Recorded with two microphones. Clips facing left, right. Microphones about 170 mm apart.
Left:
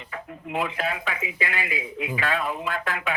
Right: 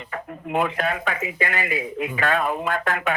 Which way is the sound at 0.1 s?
50° right (ahead or behind).